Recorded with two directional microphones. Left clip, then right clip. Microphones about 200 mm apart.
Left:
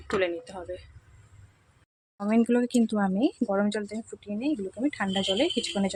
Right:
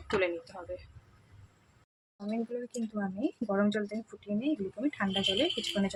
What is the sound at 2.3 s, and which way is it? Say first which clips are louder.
Speech: left 12 dB; 45° left (ahead or behind).